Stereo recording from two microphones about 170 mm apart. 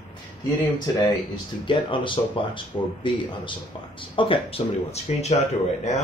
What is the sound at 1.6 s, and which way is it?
Speech, 30° left (ahead or behind).